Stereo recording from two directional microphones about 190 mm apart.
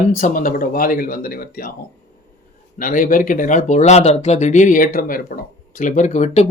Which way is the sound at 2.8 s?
45° left (ahead or behind).